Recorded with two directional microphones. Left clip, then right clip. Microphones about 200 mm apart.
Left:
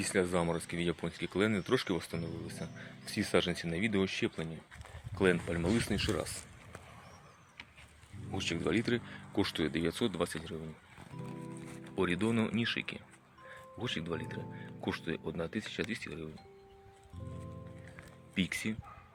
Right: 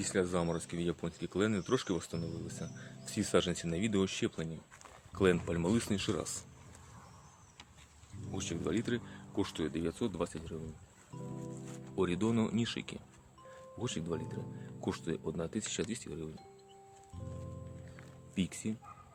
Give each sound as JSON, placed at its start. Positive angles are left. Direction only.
{"t": 0.0, "sound": "speech", "side_deg": 10}
{"t": 8.3, "sound": "speech", "side_deg": 5}
{"t": 11.9, "sound": "speech", "side_deg": -5}
{"t": 18.3, "sound": "speech", "side_deg": 0}